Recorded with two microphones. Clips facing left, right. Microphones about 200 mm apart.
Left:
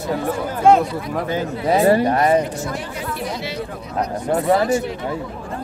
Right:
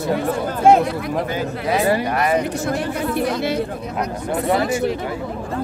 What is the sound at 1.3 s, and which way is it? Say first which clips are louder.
A man's voice: left 2 dB; 30° left (ahead or behind).